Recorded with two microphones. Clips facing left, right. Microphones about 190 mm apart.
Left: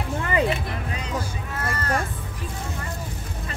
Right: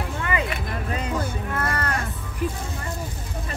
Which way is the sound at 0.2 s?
35° left (ahead or behind).